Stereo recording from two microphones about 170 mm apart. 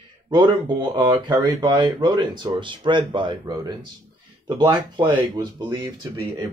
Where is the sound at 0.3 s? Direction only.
25° right (ahead or behind).